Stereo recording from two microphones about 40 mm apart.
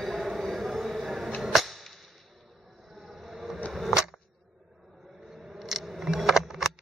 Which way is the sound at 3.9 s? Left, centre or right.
Centre.